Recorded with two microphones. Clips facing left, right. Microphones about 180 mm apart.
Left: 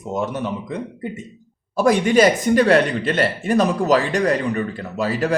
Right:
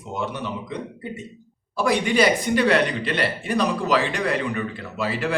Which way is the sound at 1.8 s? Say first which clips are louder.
Left 5 dB; 45° left (ahead or behind).